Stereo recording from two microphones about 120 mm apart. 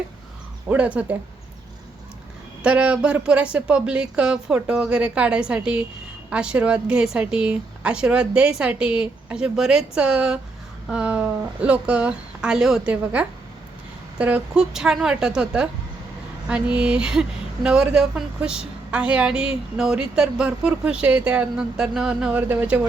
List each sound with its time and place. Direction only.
0.7 s a woman's voice: 10° right (ahead or behind)
2.6 s a woman's voice: 10° right (ahead or behind)